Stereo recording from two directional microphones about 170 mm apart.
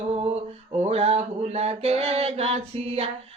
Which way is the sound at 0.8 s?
40° right (ahead or behind).